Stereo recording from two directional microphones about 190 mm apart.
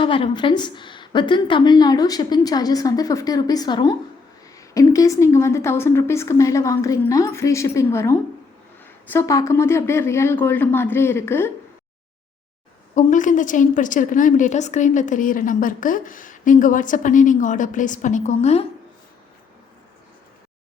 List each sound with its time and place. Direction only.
0.0 s a woman's voice: 25° left (ahead or behind)
12.9 s a woman's voice: 40° left (ahead or behind)